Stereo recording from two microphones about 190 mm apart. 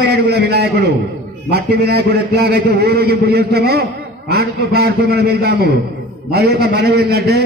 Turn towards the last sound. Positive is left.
turn(degrees=-60)  # may be behind; listen again after turning